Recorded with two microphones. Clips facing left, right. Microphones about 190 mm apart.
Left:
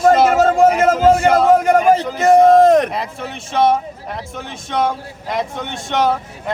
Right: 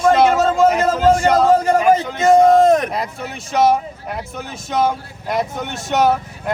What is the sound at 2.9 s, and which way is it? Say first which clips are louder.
Speech: even; centre (ahead or behind).